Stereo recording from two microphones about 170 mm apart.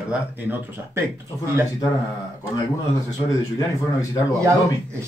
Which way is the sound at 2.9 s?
20° left (ahead or behind).